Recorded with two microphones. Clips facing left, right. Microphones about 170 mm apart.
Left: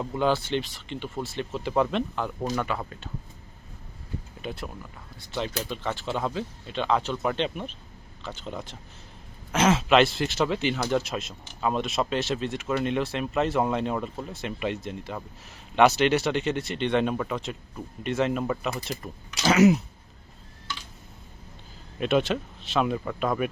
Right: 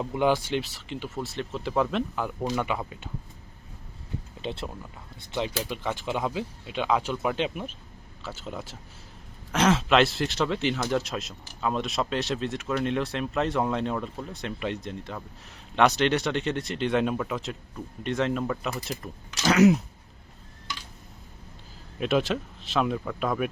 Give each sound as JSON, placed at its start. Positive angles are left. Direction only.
{"t": 0.0, "sound": "speech", "side_deg": -15}
{"t": 2.4, "sound": "speech", "side_deg": -15}
{"t": 4.4, "sound": "speech", "side_deg": -25}
{"t": 5.3, "sound": "speech", "side_deg": -10}
{"t": 21.9, "sound": "speech", "side_deg": 0}